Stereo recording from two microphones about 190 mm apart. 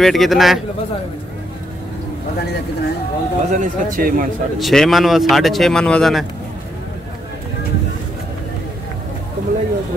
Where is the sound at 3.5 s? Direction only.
45° right (ahead or behind).